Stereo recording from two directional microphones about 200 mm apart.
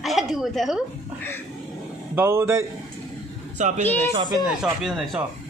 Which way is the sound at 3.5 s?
40° right (ahead or behind).